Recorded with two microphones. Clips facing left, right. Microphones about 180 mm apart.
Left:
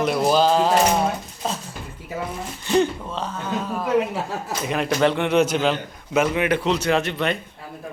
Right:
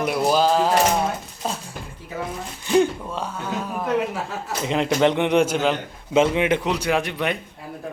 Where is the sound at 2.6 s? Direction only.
10° right (ahead or behind).